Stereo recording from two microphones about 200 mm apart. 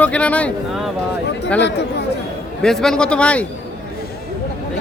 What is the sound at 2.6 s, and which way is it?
Speech, centre (ahead or behind).